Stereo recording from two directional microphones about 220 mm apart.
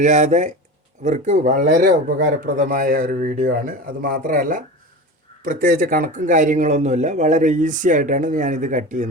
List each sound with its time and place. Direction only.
0.0 s speech: 35° right (ahead or behind)